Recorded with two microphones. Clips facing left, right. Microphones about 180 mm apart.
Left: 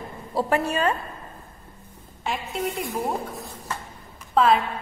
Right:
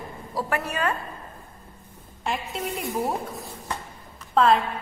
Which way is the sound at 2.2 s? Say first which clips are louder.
Left 1 dB; centre (ahead or behind).